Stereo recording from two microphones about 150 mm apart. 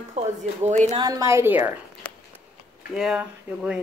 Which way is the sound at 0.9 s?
25° right (ahead or behind).